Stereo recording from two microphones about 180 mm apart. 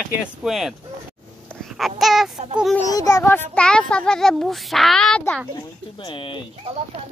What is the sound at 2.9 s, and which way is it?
A child's voice, 20° left (ahead or behind).